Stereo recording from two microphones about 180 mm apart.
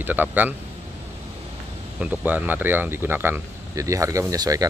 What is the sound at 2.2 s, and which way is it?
Speech, 10° right (ahead or behind).